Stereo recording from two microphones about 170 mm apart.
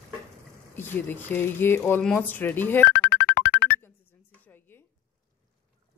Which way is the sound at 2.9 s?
75° left (ahead or behind).